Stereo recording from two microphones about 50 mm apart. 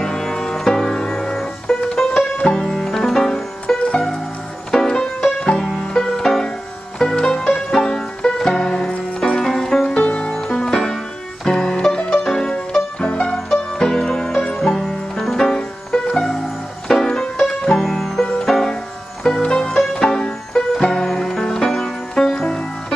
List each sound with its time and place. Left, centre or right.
0.0 s music: centre
9.9 s music: left; by 15.5 s centre
16.8 s music: centre
17.6 s music: centre